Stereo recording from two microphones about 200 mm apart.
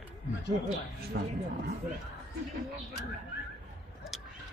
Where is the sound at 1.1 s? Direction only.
55° right (ahead or behind).